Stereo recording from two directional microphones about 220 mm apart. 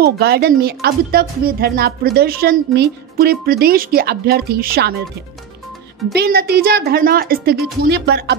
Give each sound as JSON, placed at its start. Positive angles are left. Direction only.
{"t": 0.0, "sound": "speech", "side_deg": -45}
{"t": 6.1, "sound": "speech", "side_deg": -45}